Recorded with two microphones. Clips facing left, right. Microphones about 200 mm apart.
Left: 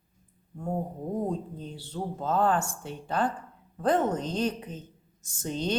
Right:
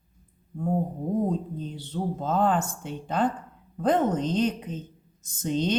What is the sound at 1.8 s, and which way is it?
Speech, 20° right (ahead or behind).